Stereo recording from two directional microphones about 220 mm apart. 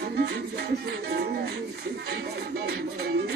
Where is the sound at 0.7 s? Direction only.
45° right (ahead or behind).